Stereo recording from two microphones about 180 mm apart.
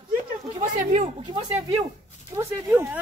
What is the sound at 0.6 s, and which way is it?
Speech, 40° right (ahead or behind).